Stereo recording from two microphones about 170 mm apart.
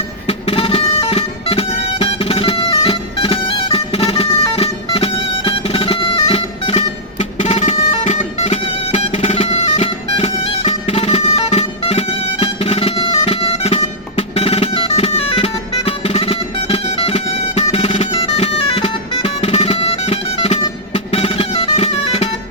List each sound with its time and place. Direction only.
0.3 s music: 35° left (ahead or behind)